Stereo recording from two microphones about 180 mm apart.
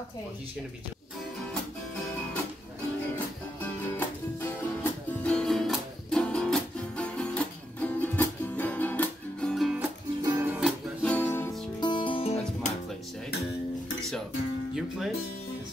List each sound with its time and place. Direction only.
3.9 s music: 10° left (ahead or behind)
10.2 s music: 15° right (ahead or behind)
10.6 s music: 5° left (ahead or behind)
11.8 s music: 25° left (ahead or behind)